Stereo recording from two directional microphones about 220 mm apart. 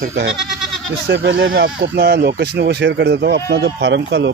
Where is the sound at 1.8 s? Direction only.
45° right (ahead or behind).